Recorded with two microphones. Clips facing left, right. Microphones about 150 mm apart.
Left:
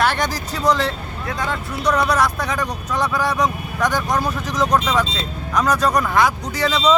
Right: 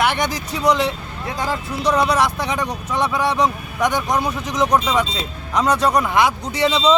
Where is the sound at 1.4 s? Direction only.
30° right (ahead or behind).